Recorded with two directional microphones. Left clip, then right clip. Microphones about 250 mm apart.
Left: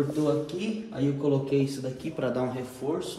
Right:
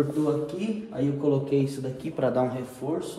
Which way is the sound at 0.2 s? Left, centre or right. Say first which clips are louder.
Even; centre.